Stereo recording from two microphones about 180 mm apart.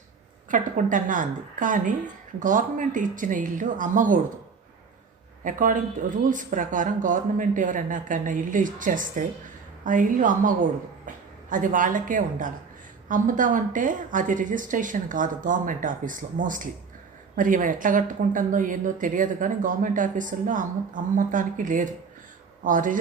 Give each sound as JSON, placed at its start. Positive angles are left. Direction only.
{"t": 0.5, "sound": "a woman's voice", "side_deg": -45}
{"t": 5.4, "sound": "a man's voice", "side_deg": -50}